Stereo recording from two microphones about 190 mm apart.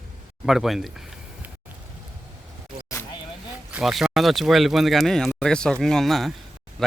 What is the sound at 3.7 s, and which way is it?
Speech, centre (ahead or behind).